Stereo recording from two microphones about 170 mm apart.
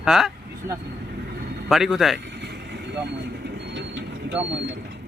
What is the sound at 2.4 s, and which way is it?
Vehicle, 85° right.